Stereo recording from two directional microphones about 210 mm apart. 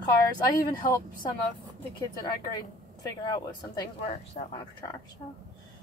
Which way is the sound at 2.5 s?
20° left (ahead or behind).